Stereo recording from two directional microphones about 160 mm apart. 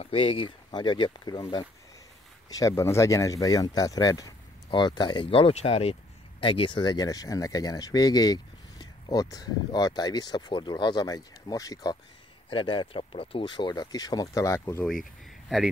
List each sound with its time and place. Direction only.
0.0 s speech: 35° left (ahead or behind); by 14.9 s 20° left (ahead or behind)
15.4 s speech: centre (ahead or behind)